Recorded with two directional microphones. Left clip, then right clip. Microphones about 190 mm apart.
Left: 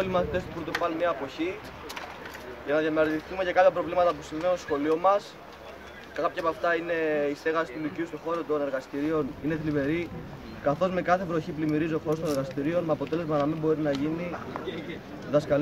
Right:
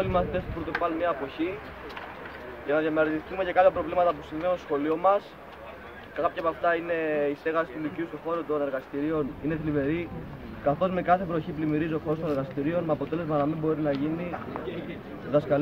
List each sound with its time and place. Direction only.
0.0 s speech: 10° left (ahead or behind)
2.7 s speech: 5° left (ahead or behind)